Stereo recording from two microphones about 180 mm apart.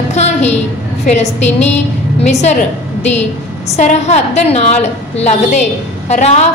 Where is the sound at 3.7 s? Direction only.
40° left (ahead or behind).